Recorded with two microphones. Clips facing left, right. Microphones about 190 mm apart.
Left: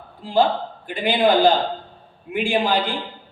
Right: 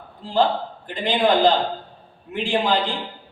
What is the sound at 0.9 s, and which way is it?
A man's voice, 10° left (ahead or behind).